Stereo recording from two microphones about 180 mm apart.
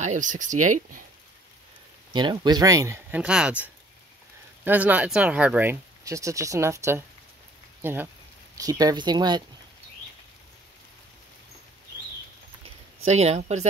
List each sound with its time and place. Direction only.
0.0 s speech: 45° right (ahead or behind)
2.1 s speech: 25° right (ahead or behind)
3.2 s speech: 5° right (ahead or behind); by 9.4 s 25° right (ahead or behind)
13.0 s speech: 35° right (ahead or behind)